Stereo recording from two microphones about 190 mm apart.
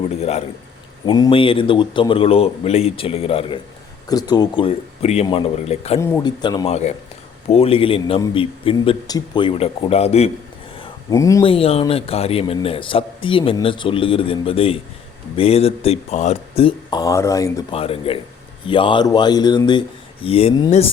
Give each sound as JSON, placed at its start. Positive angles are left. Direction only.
{"t": 0.2, "sound": "speech", "side_deg": 35}
{"t": 1.0, "sound": "speech", "side_deg": 25}
{"t": 6.0, "sound": "speech", "side_deg": 10}
{"t": 6.2, "sound": "speech", "side_deg": 20}
{"t": 6.7, "sound": "speech", "side_deg": 35}
{"t": 11.1, "sound": "speech", "side_deg": 15}
{"t": 11.4, "sound": "speech", "side_deg": 30}
{"t": 17.7, "sound": "speech", "side_deg": 30}